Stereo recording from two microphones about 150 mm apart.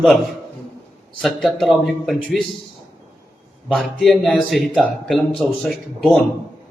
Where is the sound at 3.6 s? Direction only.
Centre (ahead or behind).